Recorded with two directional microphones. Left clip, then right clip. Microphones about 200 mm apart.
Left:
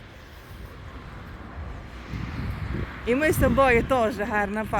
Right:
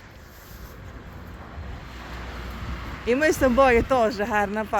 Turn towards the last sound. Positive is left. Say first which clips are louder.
# right 2 dB
turn(degrees=-5)  # may be behind; listen again after turning